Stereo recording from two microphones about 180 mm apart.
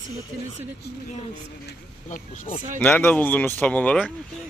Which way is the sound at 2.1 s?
45° left (ahead or behind).